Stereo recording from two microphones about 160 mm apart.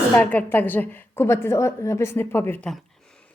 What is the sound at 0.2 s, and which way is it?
A woman's voice, 10° left (ahead or behind).